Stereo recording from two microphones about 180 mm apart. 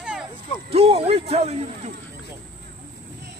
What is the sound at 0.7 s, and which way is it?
Speech, 35° right (ahead or behind).